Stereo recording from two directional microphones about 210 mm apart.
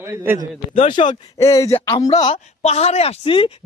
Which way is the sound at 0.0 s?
10° right (ahead or behind).